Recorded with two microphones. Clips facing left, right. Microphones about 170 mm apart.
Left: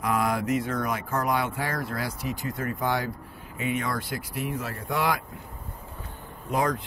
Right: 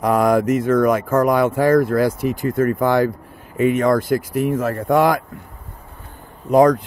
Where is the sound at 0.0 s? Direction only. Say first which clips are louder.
Right 10 dB; 45° right (ahead or behind).